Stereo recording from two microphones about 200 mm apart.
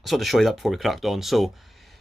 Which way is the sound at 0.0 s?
Centre (ahead or behind).